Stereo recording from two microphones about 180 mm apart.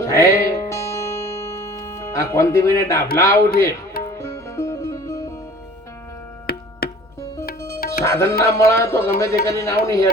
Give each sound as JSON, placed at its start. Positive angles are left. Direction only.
{"t": 0.0, "sound": "music", "side_deg": 15}
{"t": 3.2, "sound": "speech", "side_deg": 15}
{"t": 4.2, "sound": "music", "side_deg": 15}
{"t": 6.8, "sound": "music", "side_deg": 60}
{"t": 8.0, "sound": "speech", "side_deg": 15}